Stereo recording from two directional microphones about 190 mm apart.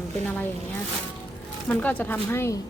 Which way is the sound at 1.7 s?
10° left (ahead or behind).